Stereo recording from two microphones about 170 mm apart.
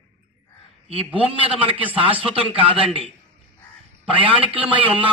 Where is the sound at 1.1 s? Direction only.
10° right (ahead or behind).